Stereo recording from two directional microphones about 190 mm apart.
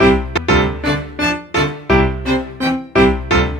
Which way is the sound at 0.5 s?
Centre (ahead or behind).